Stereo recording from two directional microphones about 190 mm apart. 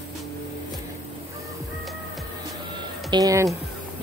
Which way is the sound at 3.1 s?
20° right (ahead or behind).